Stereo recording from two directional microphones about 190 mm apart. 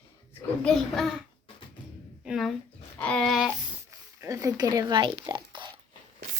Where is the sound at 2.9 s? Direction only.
5° left (ahead or behind).